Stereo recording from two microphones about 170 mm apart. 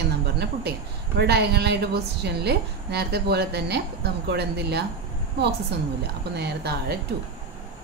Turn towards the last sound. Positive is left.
turn(degrees=-70)  # may be behind; listen again after turning